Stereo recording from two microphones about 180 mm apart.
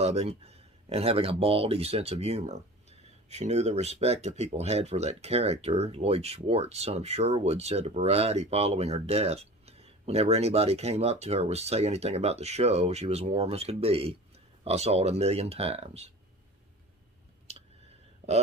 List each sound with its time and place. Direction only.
0.0 s speech: 35° right (ahead or behind)